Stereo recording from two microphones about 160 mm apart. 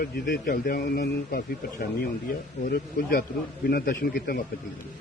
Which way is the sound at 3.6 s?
85° left.